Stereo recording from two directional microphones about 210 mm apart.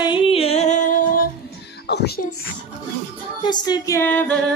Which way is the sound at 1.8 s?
50° left (ahead or behind).